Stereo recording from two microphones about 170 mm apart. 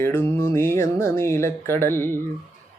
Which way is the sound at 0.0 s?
15° left (ahead or behind).